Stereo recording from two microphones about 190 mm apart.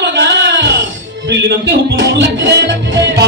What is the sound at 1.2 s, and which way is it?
Music, 65° right (ahead or behind).